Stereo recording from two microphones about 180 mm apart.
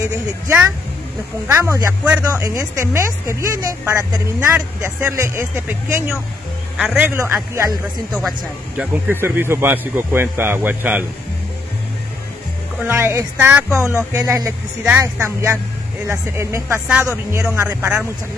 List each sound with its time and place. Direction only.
1.5 s speech: 15° right (ahead or behind)
8.1 s speech: centre (ahead or behind)
12.8 s speech: 15° right (ahead or behind)
13.7 s speech: 15° left (ahead or behind)
13.9 s speech: 15° right (ahead or behind)